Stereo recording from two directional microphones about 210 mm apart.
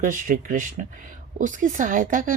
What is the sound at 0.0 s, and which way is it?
Speech, 40° right (ahead or behind).